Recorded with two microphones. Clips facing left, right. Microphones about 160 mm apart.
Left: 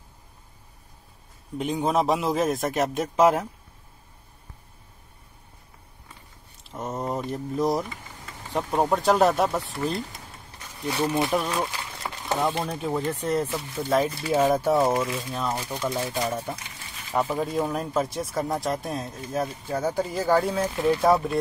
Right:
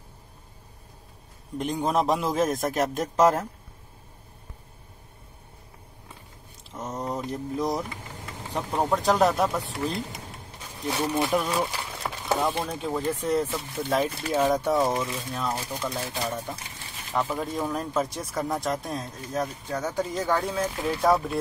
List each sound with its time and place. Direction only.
1.6 s speech: 5° left (ahead or behind)
6.7 s a sound: centre (ahead or behind)
8.9 s speech: centre (ahead or behind)
11.2 s speech: centre (ahead or behind)
17.7 s speech: centre (ahead or behind)